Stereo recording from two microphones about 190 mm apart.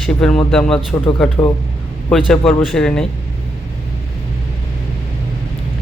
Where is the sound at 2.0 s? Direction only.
5° left (ahead or behind).